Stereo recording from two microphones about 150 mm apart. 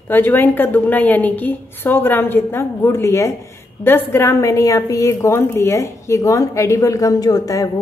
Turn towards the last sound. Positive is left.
turn(degrees=25)  # may be behind; listen again after turning